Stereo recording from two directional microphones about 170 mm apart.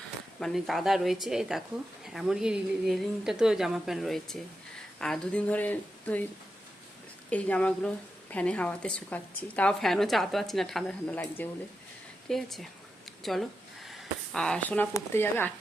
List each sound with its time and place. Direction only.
0.3 s a woman's voice: centre (ahead or behind)
7.3 s a woman's voice: 10° left (ahead or behind)